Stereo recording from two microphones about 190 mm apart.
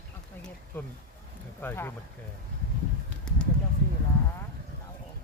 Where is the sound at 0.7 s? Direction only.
10° left (ahead or behind).